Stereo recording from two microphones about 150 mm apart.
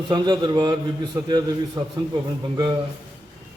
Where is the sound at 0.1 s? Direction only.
30° right (ahead or behind).